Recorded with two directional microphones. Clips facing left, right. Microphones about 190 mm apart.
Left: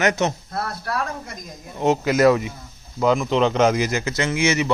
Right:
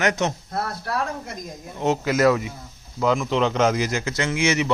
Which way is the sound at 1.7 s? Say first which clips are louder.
Left 3 dB; 15° left (ahead or behind).